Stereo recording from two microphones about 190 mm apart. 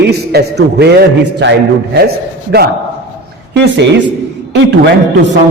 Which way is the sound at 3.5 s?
65° right (ahead or behind).